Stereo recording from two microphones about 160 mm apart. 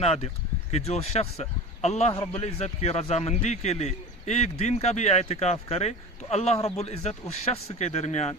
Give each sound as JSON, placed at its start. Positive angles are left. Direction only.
{"t": 0.0, "sound": "a man's voice", "side_deg": 40}